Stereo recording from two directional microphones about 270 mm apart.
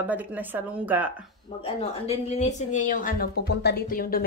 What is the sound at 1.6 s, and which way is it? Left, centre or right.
A woman's voice, left.